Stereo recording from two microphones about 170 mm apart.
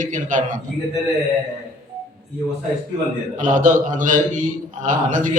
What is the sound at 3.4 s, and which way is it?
A man's voice, 50° right (ahead or behind).